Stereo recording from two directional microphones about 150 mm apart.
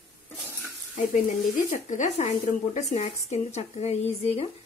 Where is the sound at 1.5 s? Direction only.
55° left (ahead or behind).